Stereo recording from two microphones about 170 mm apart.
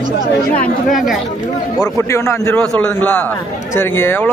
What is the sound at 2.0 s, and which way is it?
Speech, 15° left (ahead or behind).